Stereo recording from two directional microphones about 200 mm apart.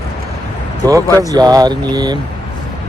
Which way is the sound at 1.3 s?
20° right (ahead or behind).